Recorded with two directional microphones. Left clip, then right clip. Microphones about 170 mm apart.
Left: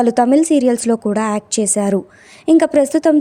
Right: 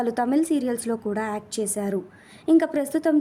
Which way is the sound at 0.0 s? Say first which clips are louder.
Left 10 dB; 45° left (ahead or behind).